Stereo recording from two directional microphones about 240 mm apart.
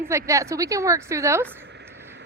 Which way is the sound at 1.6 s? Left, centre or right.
Right.